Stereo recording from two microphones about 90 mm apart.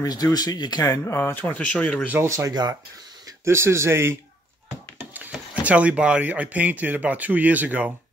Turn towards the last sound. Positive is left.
turn(degrees=-20)  # may be behind; listen again after turning